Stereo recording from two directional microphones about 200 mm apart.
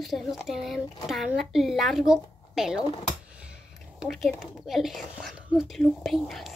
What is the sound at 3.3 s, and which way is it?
Speech, 5° right (ahead or behind).